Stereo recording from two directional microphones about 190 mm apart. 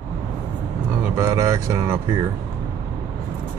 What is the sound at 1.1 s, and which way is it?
Speech, 15° right (ahead or behind).